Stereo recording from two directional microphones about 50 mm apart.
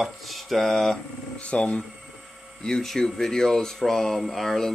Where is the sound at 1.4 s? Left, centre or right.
Left.